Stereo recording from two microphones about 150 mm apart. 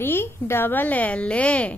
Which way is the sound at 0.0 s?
15° left (ahead or behind).